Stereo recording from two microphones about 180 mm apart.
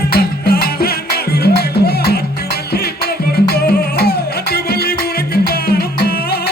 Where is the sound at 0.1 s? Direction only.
55° left (ahead or behind).